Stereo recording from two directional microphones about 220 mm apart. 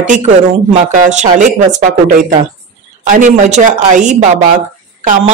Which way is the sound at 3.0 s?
35° right (ahead or behind).